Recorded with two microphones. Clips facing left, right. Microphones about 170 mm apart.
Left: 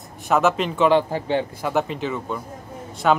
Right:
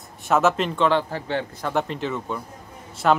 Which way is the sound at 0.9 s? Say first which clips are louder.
Left 4 dB; 15° left (ahead or behind).